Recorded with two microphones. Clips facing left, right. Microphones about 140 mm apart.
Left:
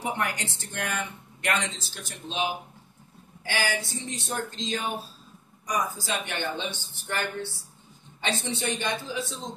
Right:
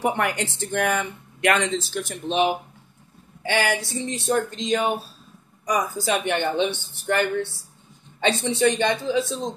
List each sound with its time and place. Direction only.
0.0 s speech: 60° right (ahead or behind)